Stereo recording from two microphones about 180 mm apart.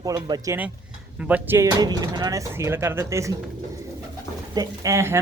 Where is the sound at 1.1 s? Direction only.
10° right (ahead or behind).